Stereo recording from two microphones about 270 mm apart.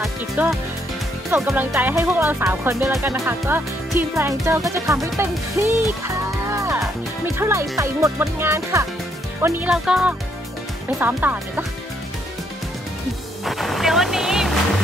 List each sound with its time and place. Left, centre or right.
0.0 s speech: centre
6.0 s music: centre
7.3 s speech: centre
13.5 s vehicle: centre